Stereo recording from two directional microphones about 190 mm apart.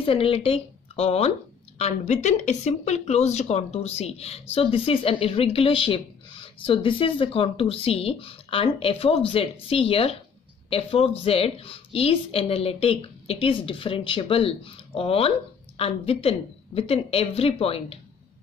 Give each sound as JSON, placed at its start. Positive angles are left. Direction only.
{"t": 0.0, "sound": "a woman's voice", "side_deg": 30}